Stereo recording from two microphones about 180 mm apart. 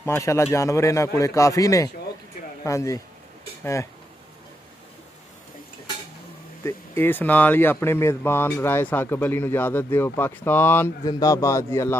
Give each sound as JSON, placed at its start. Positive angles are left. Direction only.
{"t": 0.0, "sound": "speech", "side_deg": 15}
{"t": 6.6, "sound": "speech", "side_deg": 10}